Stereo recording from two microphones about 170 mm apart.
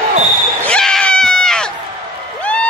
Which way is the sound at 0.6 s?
5° left (ahead or behind).